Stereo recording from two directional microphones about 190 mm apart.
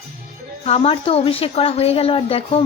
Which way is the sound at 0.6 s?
30° left (ahead or behind).